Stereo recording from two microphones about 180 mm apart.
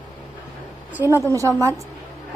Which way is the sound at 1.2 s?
15° right (ahead or behind).